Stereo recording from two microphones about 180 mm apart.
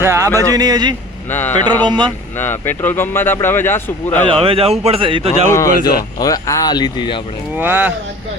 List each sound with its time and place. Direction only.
0.0 s speech: 15° right (ahead or behind)
1.3 s speech: 10° left (ahead or behind)
1.9 s speech: 25° right (ahead or behind)
2.3 s speech: 10° left (ahead or behind)
4.3 s a man's voice: 30° right (ahead or behind)
5.5 s speech: 15° left (ahead or behind)
7.5 s speech: 10° right (ahead or behind)